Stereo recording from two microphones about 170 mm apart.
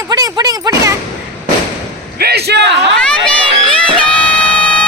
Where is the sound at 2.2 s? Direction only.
75° right (ahead or behind).